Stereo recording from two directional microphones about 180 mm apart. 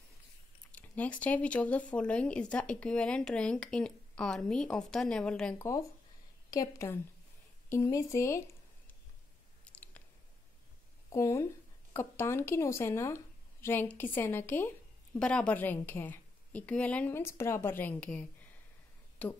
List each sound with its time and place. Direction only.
0.7 s speech: 10° left (ahead or behind)
6.5 s a woman's voice: 20° left (ahead or behind)
9.7 s chewing: 10° left (ahead or behind)
11.1 s a woman's voice: 15° left (ahead or behind)